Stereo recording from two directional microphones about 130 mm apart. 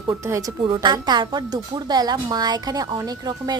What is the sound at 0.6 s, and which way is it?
A woman's voice, 35° right (ahead or behind).